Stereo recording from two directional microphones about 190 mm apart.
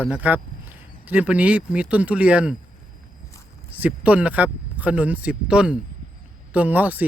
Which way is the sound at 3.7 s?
10° right (ahead or behind).